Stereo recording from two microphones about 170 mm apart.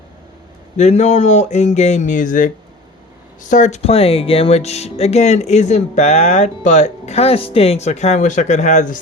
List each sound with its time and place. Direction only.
0.8 s speech: 40° left (ahead or behind)
3.5 s speech: 45° left (ahead or behind)